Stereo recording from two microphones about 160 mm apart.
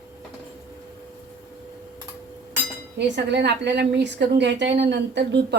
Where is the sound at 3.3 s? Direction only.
90° right.